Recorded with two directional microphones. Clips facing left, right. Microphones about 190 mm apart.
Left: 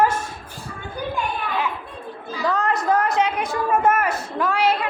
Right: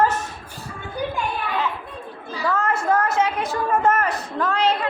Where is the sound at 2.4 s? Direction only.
20° left (ahead or behind).